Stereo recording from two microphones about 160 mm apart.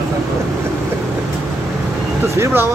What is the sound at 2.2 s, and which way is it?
Speech, 15° right (ahead or behind).